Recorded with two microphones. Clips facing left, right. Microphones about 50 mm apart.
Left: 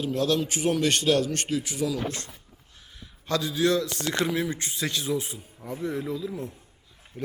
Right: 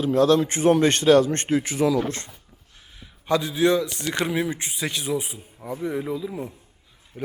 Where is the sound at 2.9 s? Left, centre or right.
Centre.